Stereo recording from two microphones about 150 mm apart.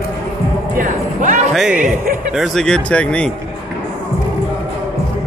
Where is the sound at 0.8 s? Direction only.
60° right (ahead or behind).